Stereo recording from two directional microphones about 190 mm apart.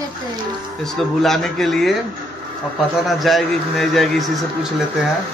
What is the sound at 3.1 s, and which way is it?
A man's voice, centre (ahead or behind).